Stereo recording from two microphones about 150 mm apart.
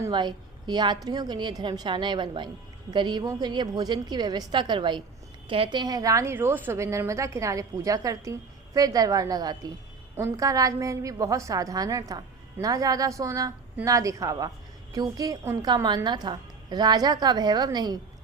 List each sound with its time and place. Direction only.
0.1 s a woman's voice: 30° right (ahead or behind)